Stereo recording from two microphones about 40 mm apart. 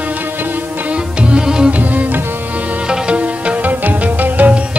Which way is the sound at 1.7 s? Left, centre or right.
Right.